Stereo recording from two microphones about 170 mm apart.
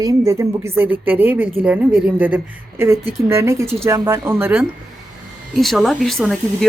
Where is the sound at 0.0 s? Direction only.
20° right (ahead or behind).